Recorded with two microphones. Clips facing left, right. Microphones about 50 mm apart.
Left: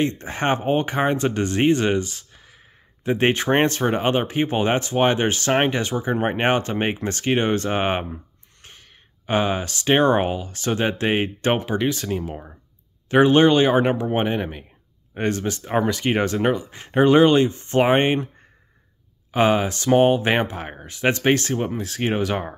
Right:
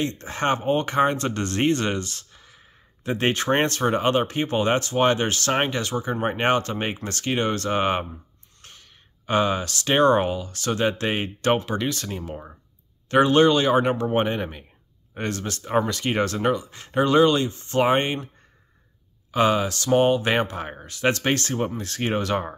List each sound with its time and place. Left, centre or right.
0.2 s speech: centre
19.3 s speech: left